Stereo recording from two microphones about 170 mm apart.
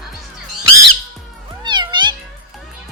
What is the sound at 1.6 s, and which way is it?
Cat, 25° right (ahead or behind).